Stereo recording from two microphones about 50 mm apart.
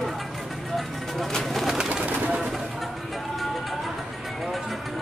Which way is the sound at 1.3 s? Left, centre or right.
Centre.